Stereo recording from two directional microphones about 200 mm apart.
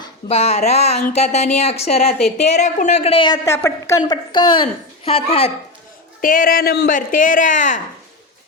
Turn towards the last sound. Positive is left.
turn(degrees=40)  # may be behind; listen again after turning